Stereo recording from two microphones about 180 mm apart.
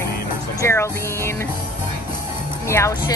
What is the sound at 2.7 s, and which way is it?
Speech, 15° left (ahead or behind).